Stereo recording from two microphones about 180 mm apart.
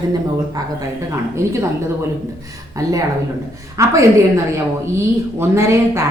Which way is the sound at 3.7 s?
15° right (ahead or behind).